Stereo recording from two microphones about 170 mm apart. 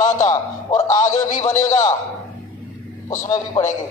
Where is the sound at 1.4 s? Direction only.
20° left (ahead or behind).